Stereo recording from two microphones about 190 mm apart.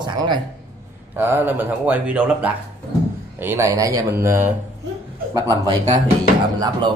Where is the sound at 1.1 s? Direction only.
10° right (ahead or behind).